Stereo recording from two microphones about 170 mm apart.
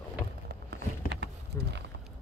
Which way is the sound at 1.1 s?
90° right.